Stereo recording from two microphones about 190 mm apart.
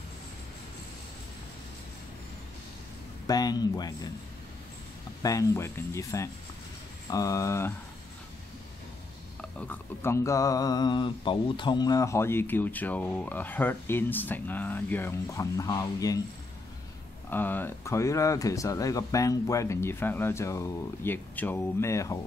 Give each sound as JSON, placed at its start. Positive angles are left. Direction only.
{"t": 3.3, "sound": "speech", "side_deg": 20}
{"t": 5.2, "sound": "speech", "side_deg": 15}
{"t": 9.4, "sound": "speech", "side_deg": 10}
{"t": 17.3, "sound": "speech", "side_deg": 10}